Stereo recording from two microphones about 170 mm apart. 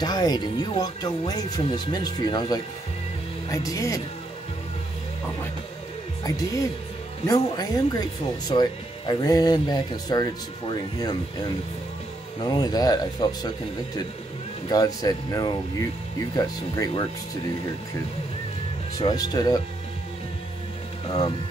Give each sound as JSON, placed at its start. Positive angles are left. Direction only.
{"t": 0.0, "sound": "speech", "side_deg": 25}
{"t": 6.2, "sound": "speech", "side_deg": 20}
{"t": 12.4, "sound": "speech", "side_deg": 25}
{"t": 18.9, "sound": "speech", "side_deg": 25}